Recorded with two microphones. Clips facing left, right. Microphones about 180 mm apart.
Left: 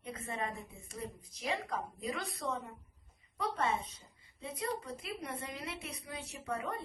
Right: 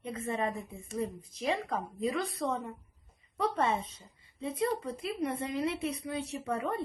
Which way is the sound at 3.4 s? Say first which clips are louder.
Right 5 dB; 30° right (ahead or behind).